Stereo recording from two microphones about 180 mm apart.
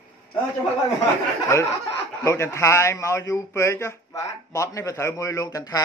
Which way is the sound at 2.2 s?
15° left (ahead or behind).